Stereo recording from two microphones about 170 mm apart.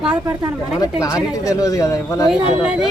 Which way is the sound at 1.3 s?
20° left (ahead or behind).